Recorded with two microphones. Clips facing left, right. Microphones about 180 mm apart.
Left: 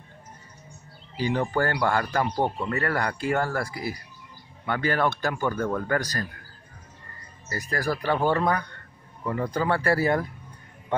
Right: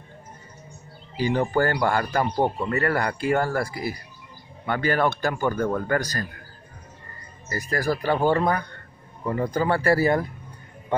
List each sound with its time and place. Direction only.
1.1 s speech: 5° right (ahead or behind)
5.9 s speech: centre (ahead or behind)
7.5 s speech: 20° right (ahead or behind)